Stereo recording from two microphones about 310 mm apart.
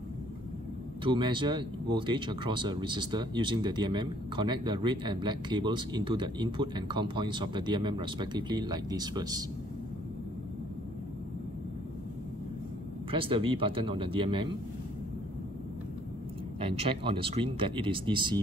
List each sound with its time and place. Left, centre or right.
1.0 s speech: centre
13.1 s speech: centre
16.5 s speech: centre